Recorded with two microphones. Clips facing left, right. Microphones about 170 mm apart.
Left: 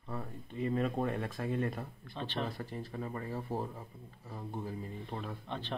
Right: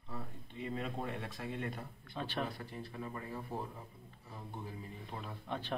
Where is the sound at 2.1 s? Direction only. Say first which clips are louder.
Left 1 dB; 10° right (ahead or behind).